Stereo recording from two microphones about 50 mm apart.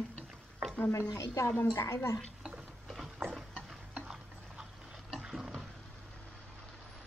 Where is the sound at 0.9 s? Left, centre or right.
Left.